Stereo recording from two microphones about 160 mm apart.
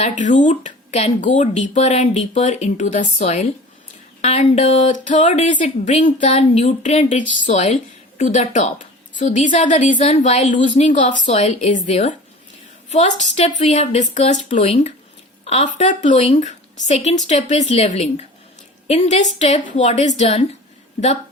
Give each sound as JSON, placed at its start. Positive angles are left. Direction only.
{"t": 0.0, "sound": "a woman's voice", "side_deg": 50}